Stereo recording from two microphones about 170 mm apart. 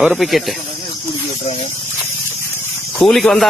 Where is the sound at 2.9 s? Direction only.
Centre (ahead or behind).